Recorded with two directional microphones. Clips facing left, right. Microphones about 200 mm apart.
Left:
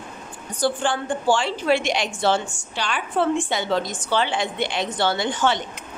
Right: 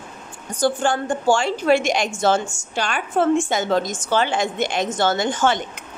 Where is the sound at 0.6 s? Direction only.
45° right (ahead or behind).